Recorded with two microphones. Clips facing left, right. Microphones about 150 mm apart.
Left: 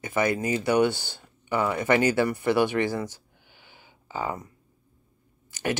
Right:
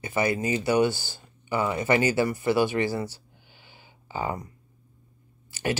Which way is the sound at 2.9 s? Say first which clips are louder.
Even; 10° right (ahead or behind).